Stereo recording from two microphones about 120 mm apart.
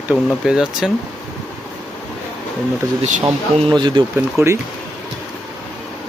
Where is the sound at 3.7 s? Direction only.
40° right (ahead or behind).